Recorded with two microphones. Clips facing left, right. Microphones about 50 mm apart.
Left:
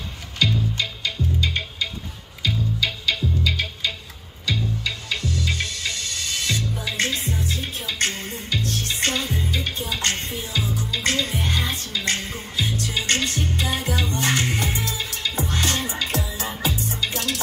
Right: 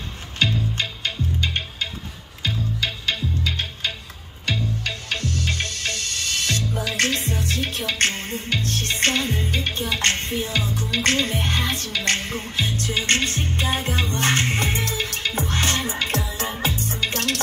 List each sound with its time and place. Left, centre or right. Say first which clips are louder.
0.4 s music: even; right
6.8 s music: right 2 dB; right
7.9 s music: right 1 dB; right